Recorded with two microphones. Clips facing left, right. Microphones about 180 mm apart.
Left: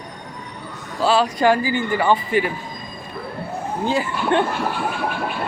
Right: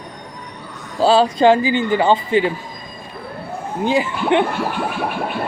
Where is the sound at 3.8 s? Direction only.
15° right (ahead or behind).